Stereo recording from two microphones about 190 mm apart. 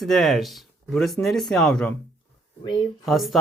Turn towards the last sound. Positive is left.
turn(degrees=0)  # may be behind; listen again after turning